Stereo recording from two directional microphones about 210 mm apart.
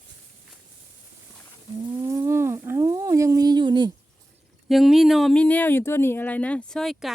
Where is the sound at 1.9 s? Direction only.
15° right (ahead or behind).